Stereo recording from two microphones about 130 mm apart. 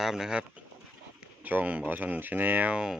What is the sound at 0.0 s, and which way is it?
Speech, 5° right (ahead or behind).